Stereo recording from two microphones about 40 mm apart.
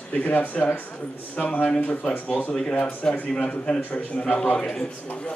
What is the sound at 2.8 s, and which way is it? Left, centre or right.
Speech, left.